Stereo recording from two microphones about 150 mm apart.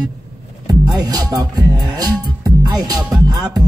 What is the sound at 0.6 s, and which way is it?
Music, 25° right (ahead or behind).